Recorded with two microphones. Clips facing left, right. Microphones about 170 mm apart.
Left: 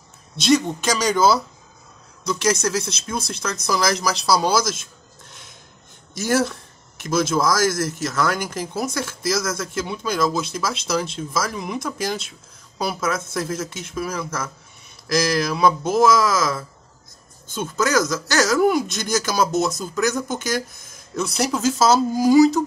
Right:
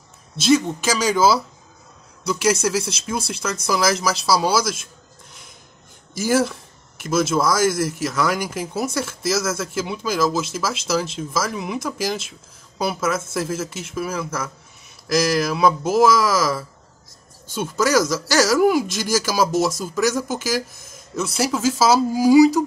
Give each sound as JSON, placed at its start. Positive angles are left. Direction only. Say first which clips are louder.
{"t": 0.4, "sound": "speech", "louder": "right 1 dB", "side_deg": 0}
{"t": 6.1, "sound": "speech", "louder": "right 1 dB", "side_deg": -5}